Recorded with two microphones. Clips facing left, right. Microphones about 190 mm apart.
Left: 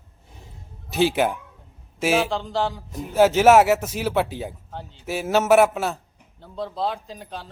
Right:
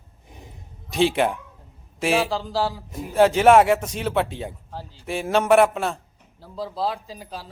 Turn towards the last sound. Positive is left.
turn(degrees=0)  # may be behind; listen again after turning